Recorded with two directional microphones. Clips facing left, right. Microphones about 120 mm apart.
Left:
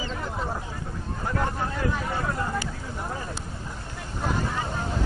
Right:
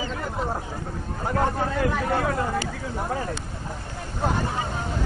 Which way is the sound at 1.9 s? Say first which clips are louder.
Right 4 dB; 65° right (ahead or behind).